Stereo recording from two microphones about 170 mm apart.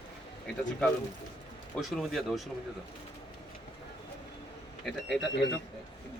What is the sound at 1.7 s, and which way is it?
Speech, centre (ahead or behind).